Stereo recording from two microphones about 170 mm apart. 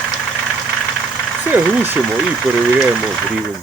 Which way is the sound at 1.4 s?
10° right (ahead or behind).